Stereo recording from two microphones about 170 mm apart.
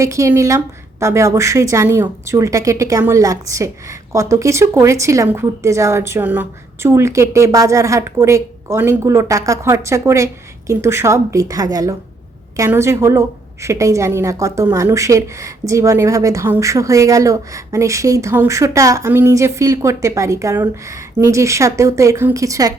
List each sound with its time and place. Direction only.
0.0 s a woman's voice: 20° right (ahead or behind)